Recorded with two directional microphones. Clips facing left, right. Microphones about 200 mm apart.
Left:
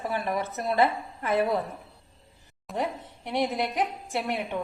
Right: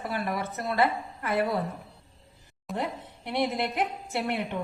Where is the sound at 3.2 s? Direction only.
15° left (ahead or behind).